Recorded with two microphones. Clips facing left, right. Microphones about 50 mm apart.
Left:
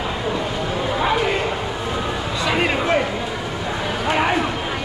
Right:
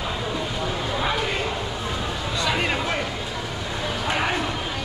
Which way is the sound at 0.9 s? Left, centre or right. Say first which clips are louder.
Left 6 dB; left.